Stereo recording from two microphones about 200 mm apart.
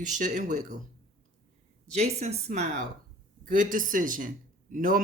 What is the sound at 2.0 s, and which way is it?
Speech, 35° right (ahead or behind).